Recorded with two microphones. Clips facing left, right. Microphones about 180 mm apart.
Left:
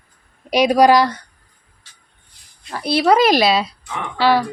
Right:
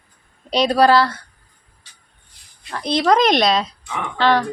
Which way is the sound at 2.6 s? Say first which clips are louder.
Left 2 dB; 5° left (ahead or behind).